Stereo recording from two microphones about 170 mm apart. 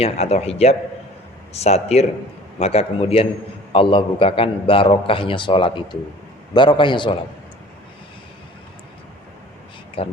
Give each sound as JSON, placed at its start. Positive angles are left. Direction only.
{"t": 0.0, "sound": "a man's voice", "side_deg": 40}
{"t": 10.0, "sound": "a man's voice", "side_deg": 30}